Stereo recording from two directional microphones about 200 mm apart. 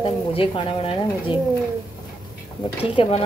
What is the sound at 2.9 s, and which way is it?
Speech, 25° left (ahead or behind).